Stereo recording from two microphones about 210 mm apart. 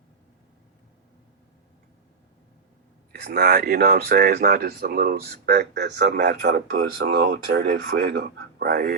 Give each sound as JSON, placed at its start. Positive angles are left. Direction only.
{"t": 3.1, "sound": "speech", "side_deg": -50}